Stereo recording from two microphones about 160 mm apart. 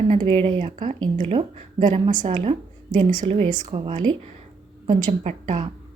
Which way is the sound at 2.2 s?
35° right (ahead or behind).